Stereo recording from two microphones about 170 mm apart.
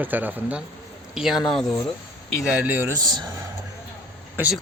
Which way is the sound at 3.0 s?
25° right (ahead or behind).